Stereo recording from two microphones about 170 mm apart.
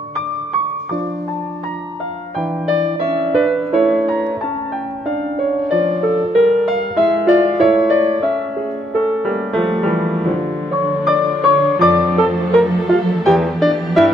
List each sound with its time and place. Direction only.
3.3 s music: centre (ahead or behind)
6.3 s music: centre (ahead or behind)